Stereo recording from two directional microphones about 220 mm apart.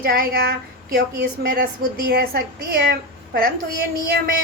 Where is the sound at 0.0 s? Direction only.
40° right (ahead or behind).